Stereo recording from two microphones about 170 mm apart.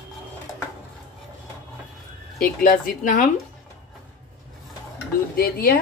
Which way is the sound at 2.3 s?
60° left (ahead or behind).